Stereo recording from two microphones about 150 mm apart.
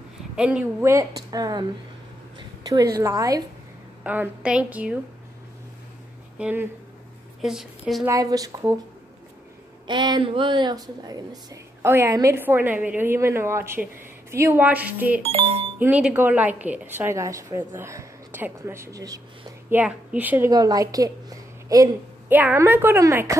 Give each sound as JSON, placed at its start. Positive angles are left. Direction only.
{"t": 0.4, "sound": "a woman's voice", "side_deg": -10}
{"t": 2.3, "sound": "a sound", "side_deg": -25}
{"t": 3.0, "sound": "a woman's voice", "side_deg": -20}
{"t": 4.0, "sound": "a woman's voice", "side_deg": -10}
{"t": 6.3, "sound": "a woman's voice", "side_deg": -10}
{"t": 8.1, "sound": "a woman's voice", "side_deg": -25}
{"t": 9.8, "sound": "a woman's voice", "side_deg": -30}
{"t": 15.2, "sound": "speech", "side_deg": -40}
{"t": 15.8, "sound": "a woman's voice", "side_deg": -10}
{"t": 19.7, "sound": "a woman's voice", "side_deg": -10}
{"t": 20.5, "sound": "a woman's voice", "side_deg": -25}
{"t": 22.3, "sound": "a woman's voice", "side_deg": -10}